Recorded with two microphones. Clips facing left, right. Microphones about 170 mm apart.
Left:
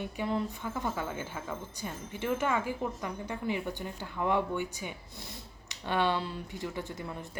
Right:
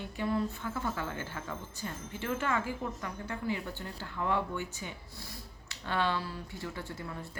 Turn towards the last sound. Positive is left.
turn(degrees=20)  # may be behind; listen again after turning